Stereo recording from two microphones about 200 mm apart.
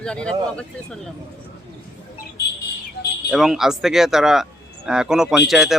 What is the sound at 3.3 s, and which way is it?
Speech, centre (ahead or behind).